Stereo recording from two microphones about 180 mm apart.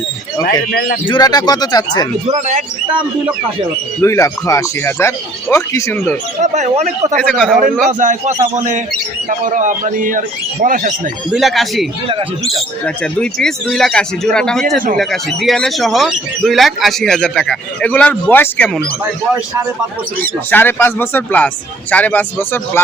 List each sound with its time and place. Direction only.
0.7 s a man's voice: 60° left (ahead or behind)
1.0 s speech: 25° left (ahead or behind)
2.2 s speech: 35° right (ahead or behind)
4.0 s speech: 15° left (ahead or behind)
6.4 s speech: 40° right (ahead or behind)
7.2 s speech: 5° left (ahead or behind)
7.9 s a man's voice: 45° right (ahead or behind)
11.3 s speech: centre (ahead or behind)
20.5 s speech: 10° left (ahead or behind)